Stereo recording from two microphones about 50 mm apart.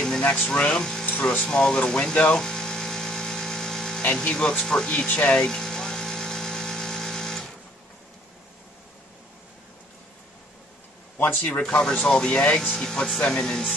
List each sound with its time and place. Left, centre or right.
0.2 s speech: left
0.7 s speech: centre
2.3 s electric toothbrush: centre
4.1 s speech: centre
5.1 s speech: left
5.5 s electric toothbrush: centre
11.1 s a man's voice: left
11.7 s speech: left
12.7 s speech: centre